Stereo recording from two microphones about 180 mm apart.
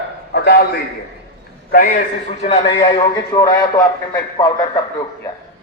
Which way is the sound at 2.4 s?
35° left (ahead or behind).